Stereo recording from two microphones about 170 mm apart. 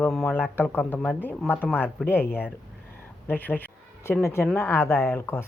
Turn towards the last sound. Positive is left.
turn(degrees=15)  # may be behind; listen again after turning